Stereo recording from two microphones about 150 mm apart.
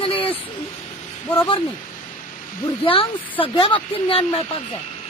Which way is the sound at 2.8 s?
35° left (ahead or behind).